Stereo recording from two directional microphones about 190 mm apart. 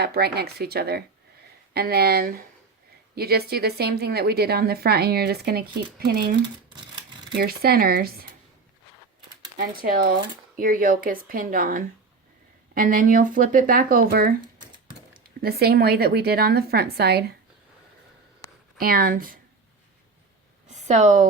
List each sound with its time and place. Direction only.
0.0 s a woman's voice: 55° right (ahead or behind)
7.3 s speech: 55° right (ahead or behind)
9.6 s speech: 50° right (ahead or behind)
15.4 s a woman's voice: 55° right (ahead or behind)
18.8 s speech: 50° right (ahead or behind)
20.7 s a sound: 40° right (ahead or behind)